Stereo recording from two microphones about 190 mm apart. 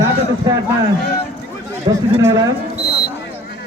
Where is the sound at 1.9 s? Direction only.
25° right (ahead or behind).